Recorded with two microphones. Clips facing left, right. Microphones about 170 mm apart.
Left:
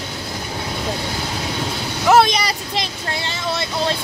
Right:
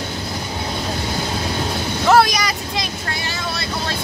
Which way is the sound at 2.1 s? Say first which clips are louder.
Left 1 dB; 25° left (ahead or behind).